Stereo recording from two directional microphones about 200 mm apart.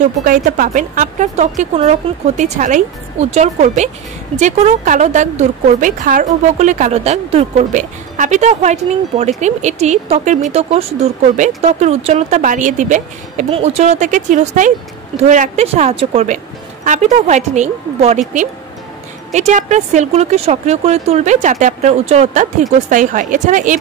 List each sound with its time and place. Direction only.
0.2 s speech: 45° right (ahead or behind)
19.3 s speech: 35° right (ahead or behind)